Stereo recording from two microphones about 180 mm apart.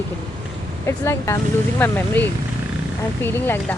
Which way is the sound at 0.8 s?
15° left (ahead or behind).